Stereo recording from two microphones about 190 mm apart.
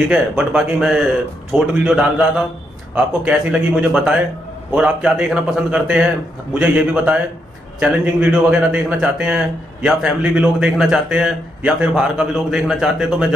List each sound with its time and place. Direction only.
0.1 s a man's voice: 5° right (ahead or behind)